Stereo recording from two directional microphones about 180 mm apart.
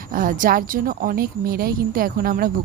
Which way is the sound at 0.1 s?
50° right (ahead or behind).